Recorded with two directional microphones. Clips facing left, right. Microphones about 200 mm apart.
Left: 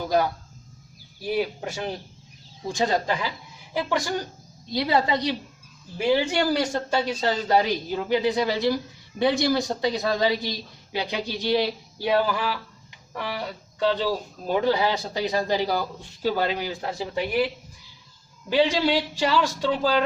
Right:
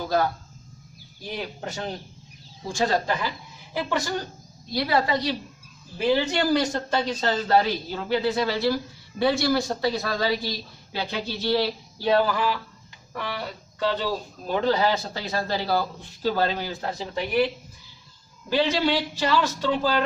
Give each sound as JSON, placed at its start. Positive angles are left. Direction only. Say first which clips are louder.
{"t": 1.2, "sound": "a woman's voice", "louder": "left 7 dB", "side_deg": 10}
{"t": 18.4, "sound": "speech", "louder": "left 2 dB", "side_deg": 15}